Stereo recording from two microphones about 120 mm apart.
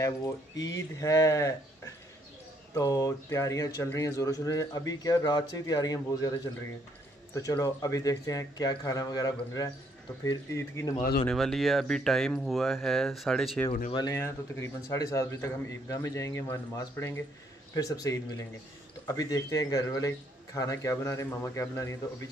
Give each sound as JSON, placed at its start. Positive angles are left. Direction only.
{"t": 0.0, "sound": "speech", "side_deg": 30}
{"t": 7.3, "sound": "speech", "side_deg": 30}
{"t": 11.2, "sound": "speech", "side_deg": 5}
{"t": 14.1, "sound": "speech", "side_deg": 20}